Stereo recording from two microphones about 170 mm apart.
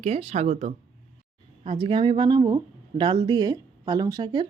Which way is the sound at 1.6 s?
30° right (ahead or behind).